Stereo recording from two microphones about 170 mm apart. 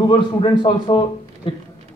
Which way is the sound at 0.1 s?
30° left (ahead or behind).